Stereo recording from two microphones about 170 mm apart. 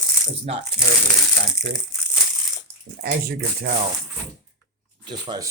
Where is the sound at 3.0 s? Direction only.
75° right (ahead or behind).